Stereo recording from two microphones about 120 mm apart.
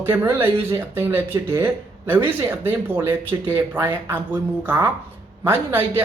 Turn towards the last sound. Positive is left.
turn(degrees=-20)  # may be behind; listen again after turning